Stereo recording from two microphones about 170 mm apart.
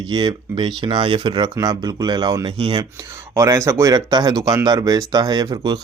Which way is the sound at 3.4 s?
15° right (ahead or behind).